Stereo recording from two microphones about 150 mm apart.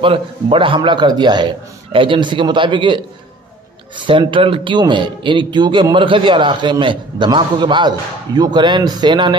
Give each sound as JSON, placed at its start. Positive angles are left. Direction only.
{"t": 0.0, "sound": "a man's voice", "side_deg": -35}